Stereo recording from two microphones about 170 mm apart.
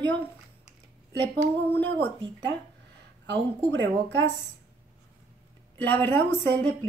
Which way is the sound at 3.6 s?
90° right.